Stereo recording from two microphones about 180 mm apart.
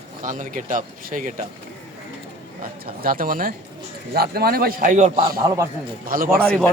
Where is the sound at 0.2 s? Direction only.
45° right (ahead or behind).